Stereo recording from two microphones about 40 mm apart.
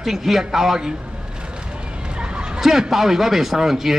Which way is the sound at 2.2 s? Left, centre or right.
Right.